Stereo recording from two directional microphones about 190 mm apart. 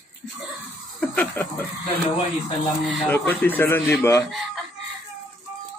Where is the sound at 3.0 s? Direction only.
10° left (ahead or behind).